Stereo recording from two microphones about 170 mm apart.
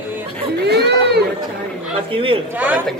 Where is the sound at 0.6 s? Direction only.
75° right (ahead or behind).